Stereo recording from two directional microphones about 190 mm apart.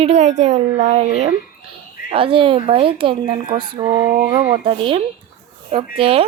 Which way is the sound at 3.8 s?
15° right (ahead or behind).